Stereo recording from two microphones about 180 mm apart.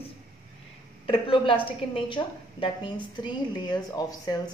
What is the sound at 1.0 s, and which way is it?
A woman's voice, 30° left (ahead or behind).